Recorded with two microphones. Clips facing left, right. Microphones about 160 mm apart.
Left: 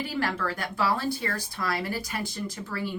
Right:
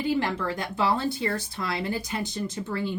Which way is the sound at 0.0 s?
20° right (ahead or behind).